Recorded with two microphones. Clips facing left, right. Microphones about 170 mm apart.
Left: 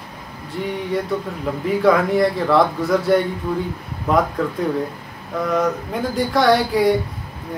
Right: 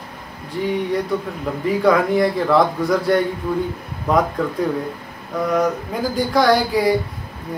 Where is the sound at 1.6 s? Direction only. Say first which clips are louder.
Even; centre (ahead or behind).